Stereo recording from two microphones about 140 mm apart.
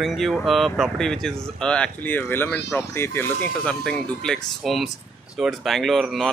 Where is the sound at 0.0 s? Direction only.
Centre (ahead or behind); by 3.3 s 15° left (ahead or behind).